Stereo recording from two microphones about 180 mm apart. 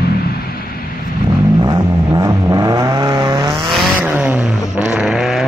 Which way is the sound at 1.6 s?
20° right (ahead or behind).